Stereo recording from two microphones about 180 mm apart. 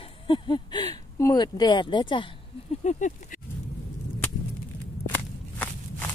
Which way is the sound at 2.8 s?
45° left (ahead or behind).